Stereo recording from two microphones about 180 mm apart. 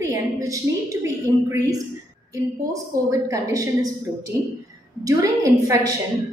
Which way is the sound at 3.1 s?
20° right (ahead or behind).